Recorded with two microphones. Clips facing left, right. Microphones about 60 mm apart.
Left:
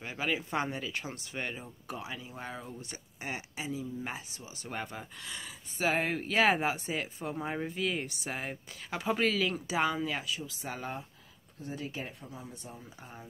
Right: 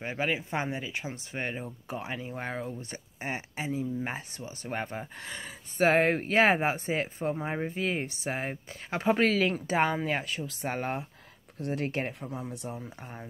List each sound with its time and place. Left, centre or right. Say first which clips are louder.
0.0 s speech: right 3 dB; right
0.4 s speech: right 1 dB; right
7.3 s speech: right 2 dB; right
9.0 s speech: right 5 dB; right
11.6 s speech: right 8 dB; right